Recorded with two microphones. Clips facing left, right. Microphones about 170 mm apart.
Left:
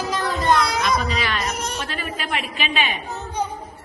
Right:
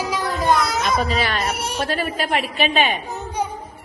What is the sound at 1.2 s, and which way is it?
Speech, 35° right (ahead or behind).